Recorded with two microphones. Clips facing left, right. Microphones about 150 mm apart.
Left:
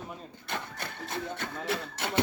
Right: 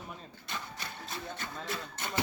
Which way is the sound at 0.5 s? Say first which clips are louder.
Left 4 dB; 60° left (ahead or behind).